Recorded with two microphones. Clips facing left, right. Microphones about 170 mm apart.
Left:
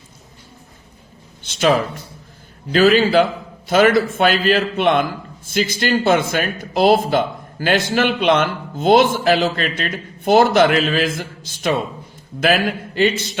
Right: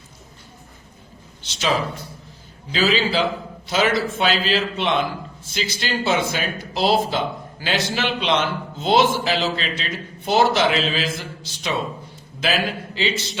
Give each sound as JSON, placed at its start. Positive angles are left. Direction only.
{"t": 1.5, "sound": "speech", "side_deg": 50}
{"t": 2.7, "sound": "speech", "side_deg": 55}